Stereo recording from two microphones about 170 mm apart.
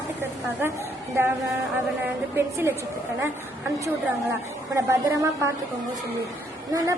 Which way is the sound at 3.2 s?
15° right (ahead or behind).